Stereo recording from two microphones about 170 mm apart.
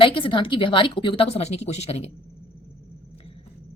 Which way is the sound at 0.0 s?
30° left (ahead or behind).